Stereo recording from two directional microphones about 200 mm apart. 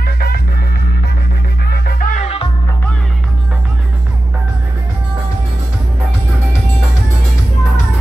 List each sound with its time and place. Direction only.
0.0 s music: 50° left (ahead or behind)
1.7 s music: 45° left (ahead or behind)